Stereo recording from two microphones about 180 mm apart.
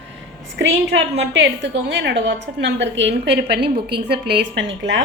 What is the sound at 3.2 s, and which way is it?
A woman's voice, 75° right (ahead or behind).